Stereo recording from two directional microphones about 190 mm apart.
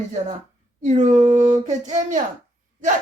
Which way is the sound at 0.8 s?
35° right (ahead or behind).